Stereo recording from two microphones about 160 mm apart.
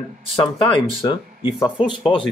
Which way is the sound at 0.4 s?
30° left (ahead or behind).